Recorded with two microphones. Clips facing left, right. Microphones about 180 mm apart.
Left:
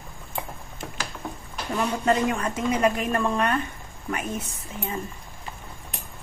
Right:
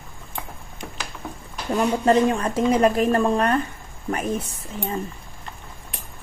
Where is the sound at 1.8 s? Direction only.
30° right (ahead or behind).